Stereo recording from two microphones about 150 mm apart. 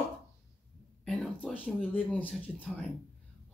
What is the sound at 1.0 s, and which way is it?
Speech, 5° left (ahead or behind).